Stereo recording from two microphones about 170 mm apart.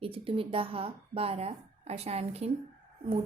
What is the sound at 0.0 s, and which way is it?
A woman's voice, 30° right (ahead or behind).